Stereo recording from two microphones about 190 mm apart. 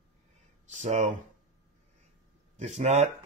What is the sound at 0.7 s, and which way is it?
Speech, 40° right (ahead or behind).